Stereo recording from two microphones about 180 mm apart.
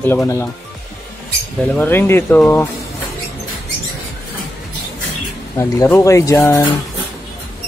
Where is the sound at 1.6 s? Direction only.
10° left (ahead or behind).